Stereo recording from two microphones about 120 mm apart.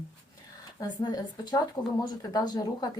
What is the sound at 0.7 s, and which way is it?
Speech, 35° left (ahead or behind).